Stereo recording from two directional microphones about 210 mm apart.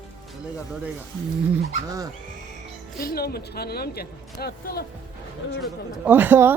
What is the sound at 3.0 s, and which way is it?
Speech, 45° left (ahead or behind).